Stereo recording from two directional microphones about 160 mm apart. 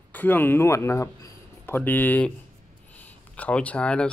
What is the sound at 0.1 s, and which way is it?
Speech, 10° left (ahead or behind).